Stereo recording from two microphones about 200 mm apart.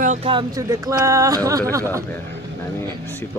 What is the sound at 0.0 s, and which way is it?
Music, 35° right (ahead or behind).